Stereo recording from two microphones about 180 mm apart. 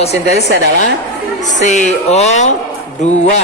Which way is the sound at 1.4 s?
40° left (ahead or behind).